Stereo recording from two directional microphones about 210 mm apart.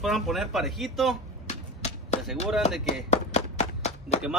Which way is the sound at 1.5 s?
30° left (ahead or behind).